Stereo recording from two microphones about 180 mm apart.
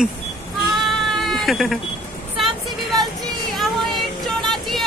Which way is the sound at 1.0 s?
Centre (ahead or behind).